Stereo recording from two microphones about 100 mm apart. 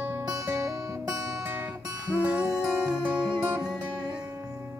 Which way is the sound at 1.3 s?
20° right (ahead or behind).